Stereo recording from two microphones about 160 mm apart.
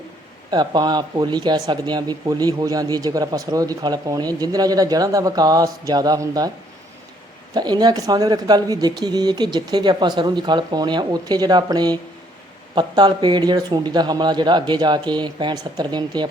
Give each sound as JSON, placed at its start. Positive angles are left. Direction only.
{"t": 0.5, "sound": "speech", "side_deg": -25}
{"t": 7.5, "sound": "speech", "side_deg": -25}